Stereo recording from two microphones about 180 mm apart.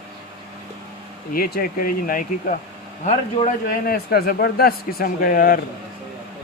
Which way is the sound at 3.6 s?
55° left (ahead or behind).